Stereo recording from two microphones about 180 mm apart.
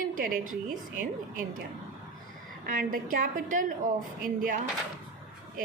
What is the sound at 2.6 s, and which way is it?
A woman's voice, 50° right (ahead or behind).